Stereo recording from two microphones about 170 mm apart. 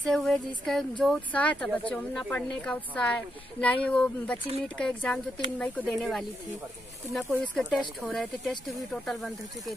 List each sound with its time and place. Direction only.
0.0 s speech: 5° left (ahead or behind)